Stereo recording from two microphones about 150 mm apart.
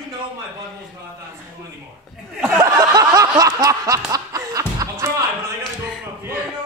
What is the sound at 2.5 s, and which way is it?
Snicker, 20° right (ahead or behind).